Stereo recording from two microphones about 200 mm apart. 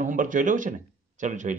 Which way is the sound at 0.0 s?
40° right (ahead or behind).